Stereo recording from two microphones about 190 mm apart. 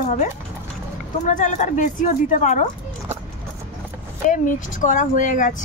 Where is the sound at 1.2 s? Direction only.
40° left (ahead or behind).